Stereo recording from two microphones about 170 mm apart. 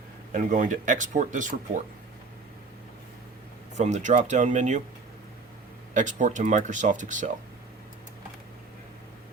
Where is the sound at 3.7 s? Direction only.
45° right (ahead or behind).